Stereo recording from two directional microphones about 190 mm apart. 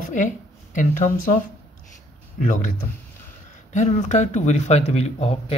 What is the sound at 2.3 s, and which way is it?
Speech, 45° left (ahead or behind).